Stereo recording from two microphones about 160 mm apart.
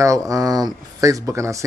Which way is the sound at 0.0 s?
20° right (ahead or behind).